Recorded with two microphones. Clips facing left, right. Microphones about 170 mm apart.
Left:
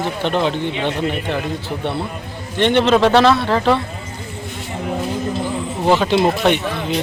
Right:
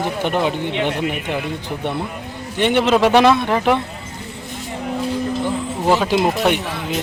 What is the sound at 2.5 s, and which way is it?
A man's voice, 10° right (ahead or behind).